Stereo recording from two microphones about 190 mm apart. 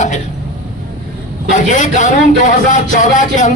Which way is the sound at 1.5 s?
40° left (ahead or behind).